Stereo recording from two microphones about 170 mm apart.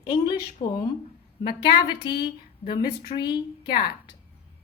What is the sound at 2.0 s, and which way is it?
A woman's voice, 25° left (ahead or behind).